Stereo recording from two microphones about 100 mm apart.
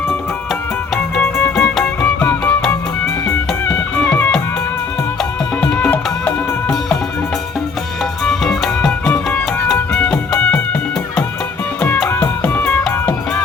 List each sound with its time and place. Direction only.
1.1 s music: 10° left (ahead or behind)
4.0 s music: 15° left (ahead or behind)
5.5 s music: 10° left (ahead or behind)
8.2 s music: 5° left (ahead or behind)
12.0 s music: 20° left (ahead or behind)